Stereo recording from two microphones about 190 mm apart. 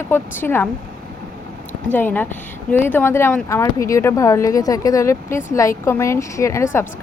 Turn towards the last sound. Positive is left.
turn(degrees=15)  # may be behind; listen again after turning